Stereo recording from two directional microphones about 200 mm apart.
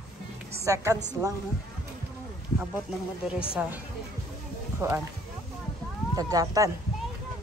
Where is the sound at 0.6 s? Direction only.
15° right (ahead or behind).